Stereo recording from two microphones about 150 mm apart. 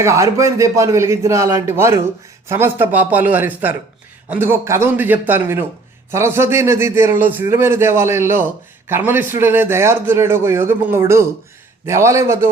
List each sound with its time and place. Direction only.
0.0 s a man's voice: 20° right (ahead or behind)